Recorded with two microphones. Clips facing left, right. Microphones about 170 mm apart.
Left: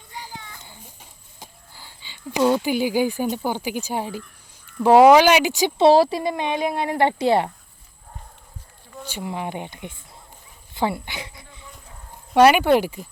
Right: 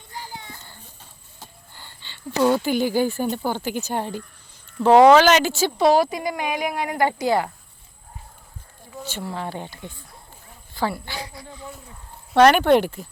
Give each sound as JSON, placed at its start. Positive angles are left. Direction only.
{"t": 0.1, "sound": "children playing", "side_deg": 15}
{"t": 0.6, "sound": "a sound", "side_deg": 15}
{"t": 3.3, "sound": "speech", "side_deg": 10}
{"t": 9.0, "sound": "speech", "side_deg": 15}
{"t": 12.3, "sound": "speech", "side_deg": 10}